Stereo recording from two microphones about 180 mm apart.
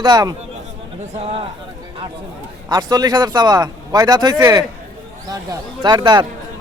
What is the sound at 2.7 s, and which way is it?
Speech, 20° right (ahead or behind).